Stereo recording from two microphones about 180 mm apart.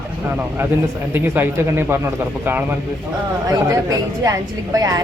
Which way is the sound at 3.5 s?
20° right (ahead or behind).